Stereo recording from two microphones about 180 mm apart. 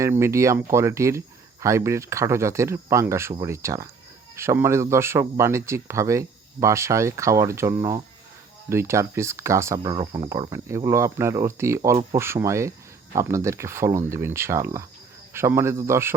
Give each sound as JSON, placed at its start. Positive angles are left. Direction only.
{"t": 0.0, "sound": "speech", "side_deg": -15}